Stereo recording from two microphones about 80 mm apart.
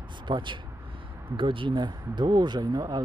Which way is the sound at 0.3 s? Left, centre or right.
Right.